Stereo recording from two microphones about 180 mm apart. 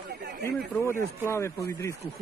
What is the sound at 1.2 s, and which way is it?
Speech, 15° left (ahead or behind).